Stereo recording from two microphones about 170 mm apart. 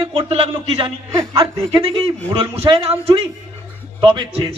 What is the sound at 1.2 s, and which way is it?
Speech, 20° right (ahead or behind).